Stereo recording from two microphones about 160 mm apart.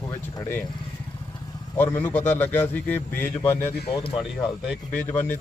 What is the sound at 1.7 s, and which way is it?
A man's voice, 10° left (ahead or behind).